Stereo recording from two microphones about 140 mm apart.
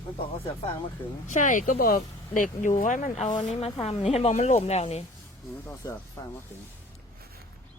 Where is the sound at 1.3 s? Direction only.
65° left (ahead or behind); by 2.0 s 80° left.